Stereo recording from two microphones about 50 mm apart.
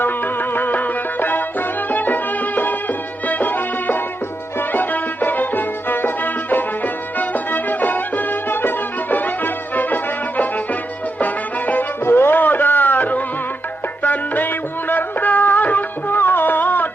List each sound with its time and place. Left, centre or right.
0.0 s music: left
12.0 s music: left